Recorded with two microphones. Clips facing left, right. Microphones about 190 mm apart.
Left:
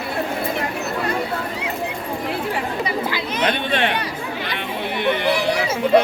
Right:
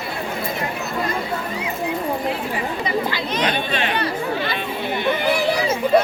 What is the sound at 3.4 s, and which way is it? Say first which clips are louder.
Chatter: left 3 dB; 60° left (ahead or behind).